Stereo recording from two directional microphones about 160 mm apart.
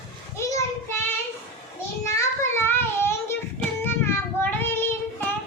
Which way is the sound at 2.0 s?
15° left (ahead or behind).